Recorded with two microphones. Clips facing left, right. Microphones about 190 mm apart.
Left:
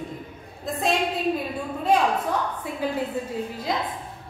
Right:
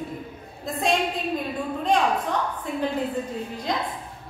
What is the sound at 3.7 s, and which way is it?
Speech, 5° left (ahead or behind).